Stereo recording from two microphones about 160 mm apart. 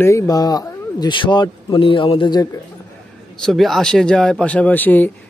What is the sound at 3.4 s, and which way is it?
Speech, centre (ahead or behind).